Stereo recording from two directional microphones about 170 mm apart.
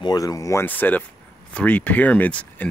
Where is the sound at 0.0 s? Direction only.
20° left (ahead or behind).